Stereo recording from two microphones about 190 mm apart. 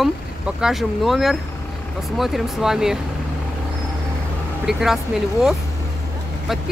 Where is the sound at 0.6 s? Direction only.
Centre (ahead or behind).